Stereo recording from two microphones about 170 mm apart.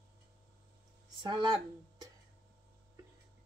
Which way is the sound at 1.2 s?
25° right (ahead or behind).